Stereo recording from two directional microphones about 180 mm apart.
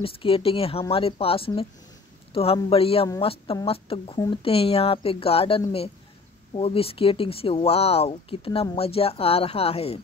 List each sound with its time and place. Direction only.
0.0 s speech: 30° left (ahead or behind)